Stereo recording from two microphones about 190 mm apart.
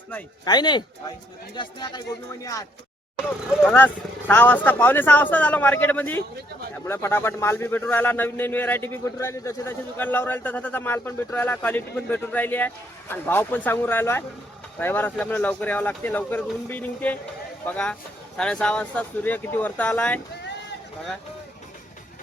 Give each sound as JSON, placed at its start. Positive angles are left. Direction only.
{"t": 0.4, "sound": "speech", "side_deg": 20}
{"t": 18.3, "sound": "speech", "side_deg": 5}